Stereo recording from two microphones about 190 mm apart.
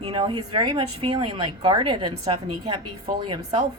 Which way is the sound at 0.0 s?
25° right (ahead or behind).